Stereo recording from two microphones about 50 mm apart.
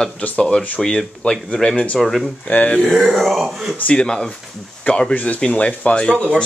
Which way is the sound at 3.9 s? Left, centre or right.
Centre.